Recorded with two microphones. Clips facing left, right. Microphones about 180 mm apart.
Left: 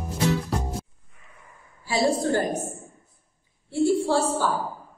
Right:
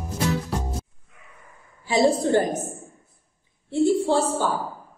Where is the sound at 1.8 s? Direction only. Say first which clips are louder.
Right 3 dB; 20° right (ahead or behind).